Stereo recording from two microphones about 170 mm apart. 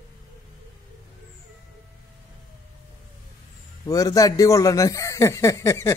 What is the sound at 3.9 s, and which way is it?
Speech, 20° left (ahead or behind).